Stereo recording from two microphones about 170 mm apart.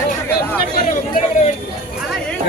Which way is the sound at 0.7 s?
50° left (ahead or behind).